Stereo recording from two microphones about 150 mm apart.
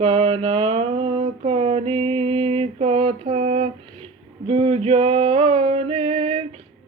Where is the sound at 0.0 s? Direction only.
40° right (ahead or behind).